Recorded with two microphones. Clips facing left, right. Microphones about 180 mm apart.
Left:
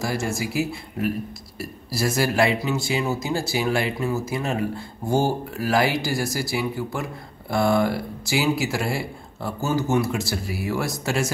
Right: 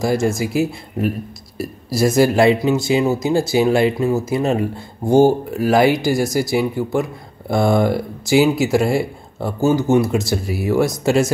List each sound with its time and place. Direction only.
0.0 s speech: 20° right (ahead or behind)